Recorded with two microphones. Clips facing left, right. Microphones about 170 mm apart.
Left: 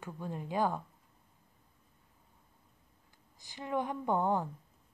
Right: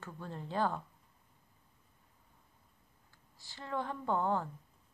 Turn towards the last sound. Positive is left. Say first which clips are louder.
# left 2 dB
turn(degrees=15)  # may be behind; listen again after turning